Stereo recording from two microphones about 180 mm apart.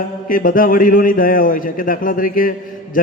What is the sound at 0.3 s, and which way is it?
A man's voice, 50° left (ahead or behind).